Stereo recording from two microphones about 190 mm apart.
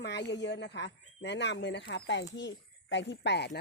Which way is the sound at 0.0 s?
65° left (ahead or behind).